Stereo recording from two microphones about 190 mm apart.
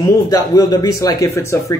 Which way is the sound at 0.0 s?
20° left (ahead or behind).